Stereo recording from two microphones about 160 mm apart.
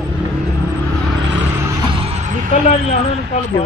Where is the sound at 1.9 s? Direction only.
40° right (ahead or behind).